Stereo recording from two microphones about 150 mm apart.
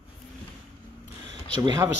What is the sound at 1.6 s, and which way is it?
Speech, 25° right (ahead or behind).